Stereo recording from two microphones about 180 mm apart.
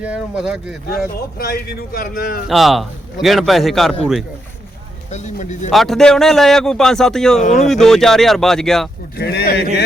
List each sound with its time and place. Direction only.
0.0 s speech: 5° right (ahead or behind)
0.9 s speech: 60° left (ahead or behind)
2.5 s speech: centre (ahead or behind)
5.1 s speech: 40° left (ahead or behind)
5.7 s speech: centre (ahead or behind)
9.1 s speech: 65° left (ahead or behind)